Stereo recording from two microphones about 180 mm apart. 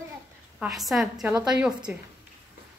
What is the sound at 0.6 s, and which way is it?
A woman's voice, centre (ahead or behind).